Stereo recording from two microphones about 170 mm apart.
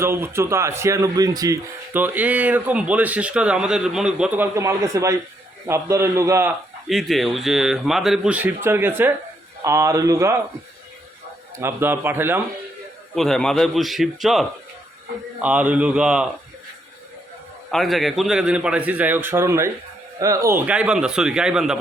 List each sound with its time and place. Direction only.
0.0 s speech: 15° right (ahead or behind)
4.5 s speech: 20° right (ahead or behind)
6.8 s speech: centre (ahead or behind); by 10.3 s 20° right (ahead or behind)
11.5 s speech: 15° right (ahead or behind)
13.1 s speech: centre (ahead or behind)
17.7 s speech: centre (ahead or behind); by 20.6 s 20° right (ahead or behind)
20.7 s speech: 5° right (ahead or behind)